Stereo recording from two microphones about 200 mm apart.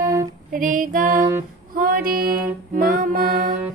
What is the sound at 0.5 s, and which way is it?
Music, 40° right (ahead or behind).